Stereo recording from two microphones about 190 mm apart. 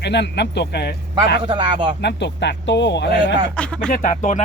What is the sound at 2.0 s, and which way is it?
Speech, 65° left (ahead or behind).